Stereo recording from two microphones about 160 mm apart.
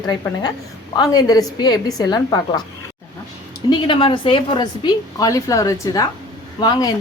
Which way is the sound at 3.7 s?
30° left (ahead or behind).